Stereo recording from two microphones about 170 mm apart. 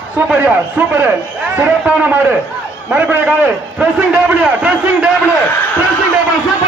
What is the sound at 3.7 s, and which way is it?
A man's voice, 5° right (ahead or behind).